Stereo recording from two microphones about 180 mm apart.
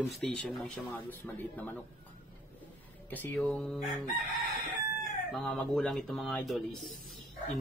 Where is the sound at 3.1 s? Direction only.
10° left (ahead or behind).